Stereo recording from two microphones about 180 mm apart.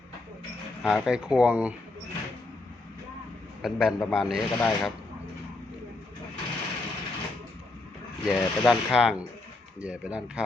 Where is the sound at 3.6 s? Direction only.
Centre (ahead or behind).